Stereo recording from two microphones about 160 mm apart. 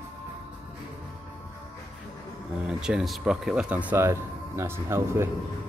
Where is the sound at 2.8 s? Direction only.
5° right (ahead or behind).